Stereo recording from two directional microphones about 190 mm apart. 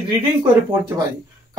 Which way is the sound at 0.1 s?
20° right (ahead or behind).